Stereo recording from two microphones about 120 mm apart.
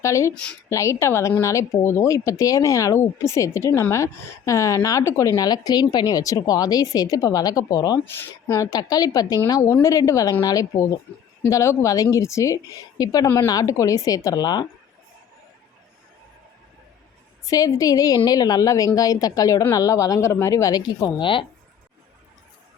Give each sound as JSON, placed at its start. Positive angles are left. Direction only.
{"t": 0.0, "sound": "speech", "side_deg": 25}
{"t": 8.0, "sound": "speech", "side_deg": 20}
{"t": 17.4, "sound": "speech", "side_deg": 30}